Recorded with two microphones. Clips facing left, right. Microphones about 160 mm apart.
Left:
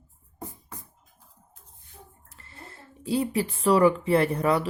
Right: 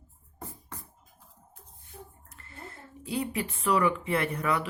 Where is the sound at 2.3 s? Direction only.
30° left (ahead or behind).